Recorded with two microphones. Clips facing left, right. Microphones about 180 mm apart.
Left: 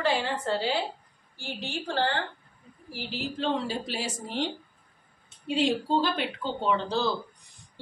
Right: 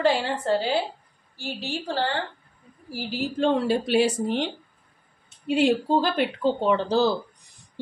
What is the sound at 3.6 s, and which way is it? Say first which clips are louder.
Speech: right 11 dB; 65° right (ahead or behind).